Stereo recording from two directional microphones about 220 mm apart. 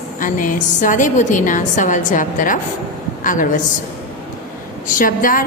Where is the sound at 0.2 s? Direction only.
35° left (ahead or behind).